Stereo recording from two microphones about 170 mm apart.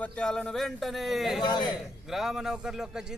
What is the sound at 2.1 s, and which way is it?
Speech, centre (ahead or behind).